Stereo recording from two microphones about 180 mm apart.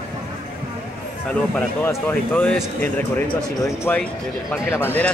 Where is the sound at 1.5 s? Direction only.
10° left (ahead or behind).